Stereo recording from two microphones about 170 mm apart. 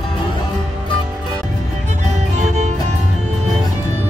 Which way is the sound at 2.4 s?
45° right (ahead or behind).